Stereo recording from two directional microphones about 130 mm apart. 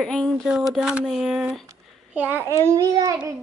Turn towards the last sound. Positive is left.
turn(degrees=-25)  # may be behind; listen again after turning